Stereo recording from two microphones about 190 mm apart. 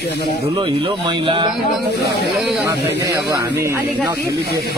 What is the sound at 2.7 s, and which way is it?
Speech, 20° right (ahead or behind).